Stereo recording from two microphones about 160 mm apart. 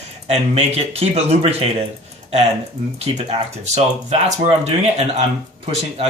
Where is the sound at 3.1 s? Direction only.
45° right (ahead or behind).